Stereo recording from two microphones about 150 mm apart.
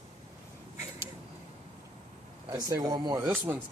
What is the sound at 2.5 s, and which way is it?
Speech, 20° right (ahead or behind).